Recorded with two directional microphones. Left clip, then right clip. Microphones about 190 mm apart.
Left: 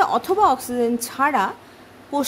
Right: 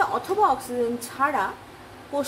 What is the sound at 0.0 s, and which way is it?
A woman's voice, 70° left (ahead or behind).